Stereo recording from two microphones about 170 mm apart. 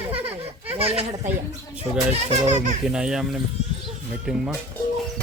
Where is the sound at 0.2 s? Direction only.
10° right (ahead or behind).